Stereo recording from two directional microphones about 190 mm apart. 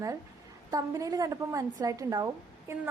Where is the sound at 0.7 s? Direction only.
15° right (ahead or behind).